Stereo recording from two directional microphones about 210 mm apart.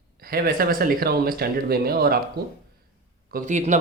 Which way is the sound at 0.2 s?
45° right (ahead or behind).